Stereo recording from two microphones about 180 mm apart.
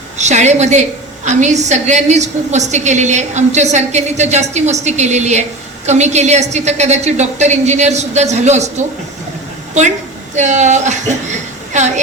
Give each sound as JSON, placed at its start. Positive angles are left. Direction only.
{"t": 0.2, "sound": "a woman's voice", "side_deg": -40}
{"t": 10.3, "sound": "a woman's voice", "side_deg": -40}